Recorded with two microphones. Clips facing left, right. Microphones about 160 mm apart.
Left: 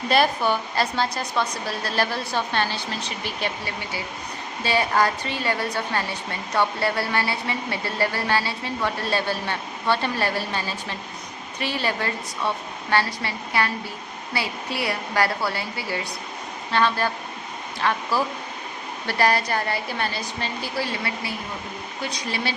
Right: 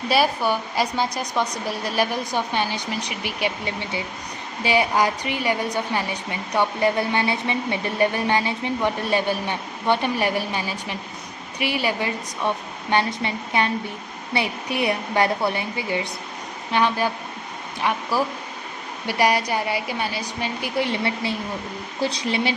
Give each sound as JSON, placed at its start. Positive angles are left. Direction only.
{"t": 0.1, "sound": "speech", "side_deg": -10}